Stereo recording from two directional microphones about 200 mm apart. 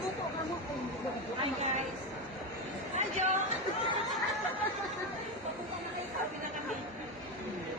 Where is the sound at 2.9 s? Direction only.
35° right (ahead or behind).